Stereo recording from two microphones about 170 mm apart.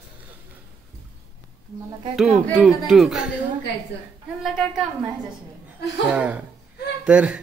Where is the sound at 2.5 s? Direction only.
Centre (ahead or behind).